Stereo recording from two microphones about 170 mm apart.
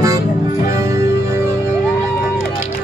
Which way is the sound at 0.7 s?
20° right (ahead or behind).